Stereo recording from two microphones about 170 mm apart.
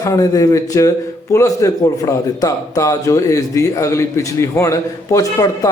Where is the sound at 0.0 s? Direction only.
20° left (ahead or behind).